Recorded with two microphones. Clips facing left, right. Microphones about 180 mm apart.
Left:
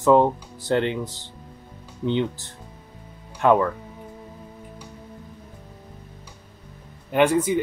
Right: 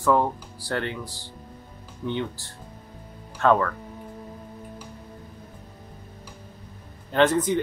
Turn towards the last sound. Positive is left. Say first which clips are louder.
# left 1 dB
turn(degrees=10)  # may be behind; listen again after turning